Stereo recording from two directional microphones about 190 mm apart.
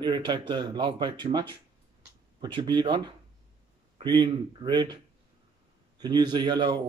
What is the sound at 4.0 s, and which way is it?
Speech, 25° right (ahead or behind).